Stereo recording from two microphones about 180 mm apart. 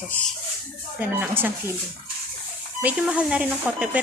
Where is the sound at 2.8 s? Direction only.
5° right (ahead or behind).